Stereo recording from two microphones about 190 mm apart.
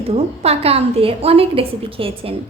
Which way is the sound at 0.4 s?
30° right (ahead or behind).